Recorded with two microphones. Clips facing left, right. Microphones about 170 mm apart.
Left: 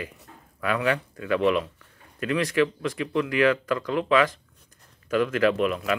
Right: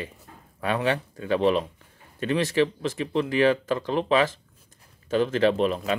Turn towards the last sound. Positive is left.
turn(degrees=-30)  # may be behind; listen again after turning